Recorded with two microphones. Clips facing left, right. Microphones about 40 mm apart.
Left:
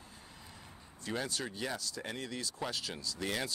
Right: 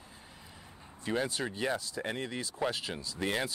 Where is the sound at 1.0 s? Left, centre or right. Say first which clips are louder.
Right 5 dB; right.